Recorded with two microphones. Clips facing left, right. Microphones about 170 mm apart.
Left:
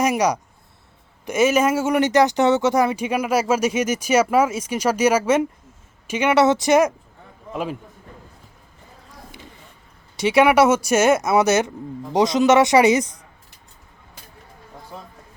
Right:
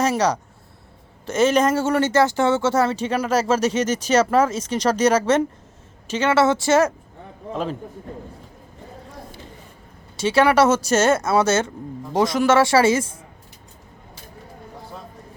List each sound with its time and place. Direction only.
0.0 s speech: 10° left (ahead or behind)
10.2 s speech: 15° left (ahead or behind)